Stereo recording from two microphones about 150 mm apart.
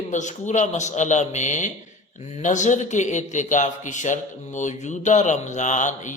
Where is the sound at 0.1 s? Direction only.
50° left (ahead or behind).